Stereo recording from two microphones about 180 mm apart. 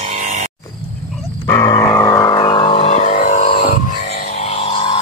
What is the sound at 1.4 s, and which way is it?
Vehicle, 15° left (ahead or behind).